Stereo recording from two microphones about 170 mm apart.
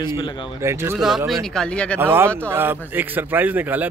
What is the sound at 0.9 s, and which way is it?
Speech, centre (ahead or behind).